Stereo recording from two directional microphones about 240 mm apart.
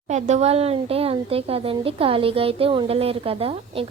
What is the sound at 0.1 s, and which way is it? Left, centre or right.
Speech, right.